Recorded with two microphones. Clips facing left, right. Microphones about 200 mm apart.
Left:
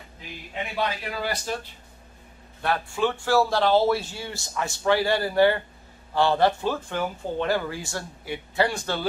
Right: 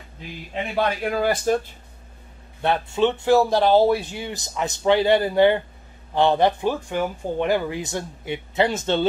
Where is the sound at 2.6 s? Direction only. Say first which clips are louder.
Right 5 dB; 25° right (ahead or behind).